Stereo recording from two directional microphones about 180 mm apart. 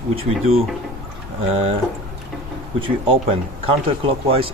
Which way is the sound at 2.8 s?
30° right (ahead or behind).